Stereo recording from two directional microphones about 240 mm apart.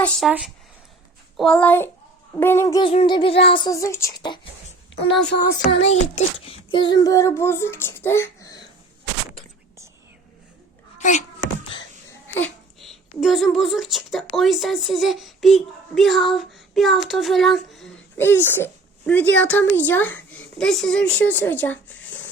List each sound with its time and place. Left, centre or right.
0.0 s a child's voice: centre
2.9 s child singing: left
5.4 s child singing: left
5.9 s a child's voice: left
10.9 s cat: left
12.3 s speech: centre